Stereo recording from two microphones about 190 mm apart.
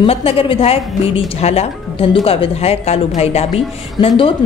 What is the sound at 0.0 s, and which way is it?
Speech, 30° left (ahead or behind).